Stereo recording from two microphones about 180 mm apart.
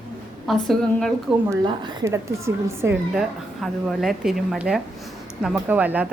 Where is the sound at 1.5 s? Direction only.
25° right (ahead or behind).